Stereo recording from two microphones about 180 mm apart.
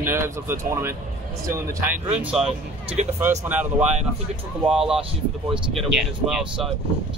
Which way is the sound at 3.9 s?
30° right (ahead or behind).